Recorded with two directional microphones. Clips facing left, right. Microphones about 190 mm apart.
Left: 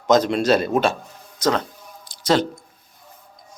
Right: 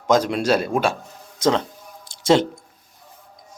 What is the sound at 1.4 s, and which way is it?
Speech, 25° right (ahead or behind).